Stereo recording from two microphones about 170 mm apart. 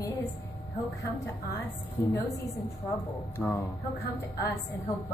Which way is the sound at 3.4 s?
10° left (ahead or behind).